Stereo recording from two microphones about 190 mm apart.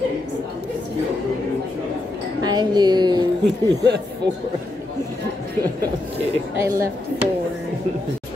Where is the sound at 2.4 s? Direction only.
20° right (ahead or behind).